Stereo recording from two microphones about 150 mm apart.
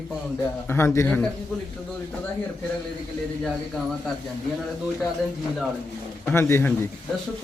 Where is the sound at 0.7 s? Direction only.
15° left (ahead or behind).